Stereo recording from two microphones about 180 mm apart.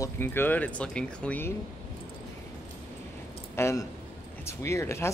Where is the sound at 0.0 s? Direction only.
10° left (ahead or behind).